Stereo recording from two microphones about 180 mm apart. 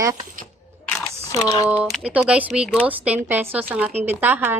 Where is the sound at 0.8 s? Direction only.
20° left (ahead or behind).